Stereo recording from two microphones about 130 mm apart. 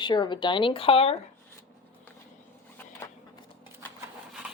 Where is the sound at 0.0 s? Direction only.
35° left (ahead or behind).